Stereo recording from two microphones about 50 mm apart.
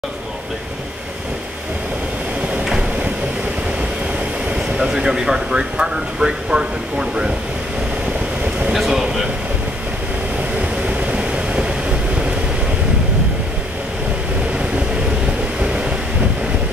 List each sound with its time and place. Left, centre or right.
4.7 s speech: centre
8.7 s speech: centre
10.9 s vehicle: right